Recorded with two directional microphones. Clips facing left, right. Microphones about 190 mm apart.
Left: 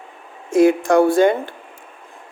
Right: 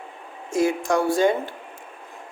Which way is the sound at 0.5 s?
60° left (ahead or behind).